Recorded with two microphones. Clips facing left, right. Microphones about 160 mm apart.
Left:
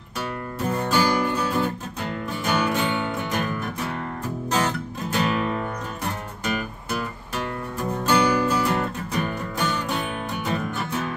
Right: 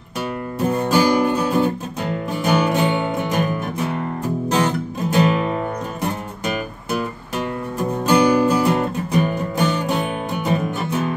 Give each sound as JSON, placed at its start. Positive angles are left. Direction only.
{"t": 0.7, "sound": "music", "side_deg": -15}